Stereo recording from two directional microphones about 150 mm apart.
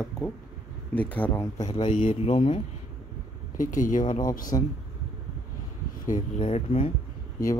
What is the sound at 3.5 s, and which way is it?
Speech, 60° left (ahead or behind).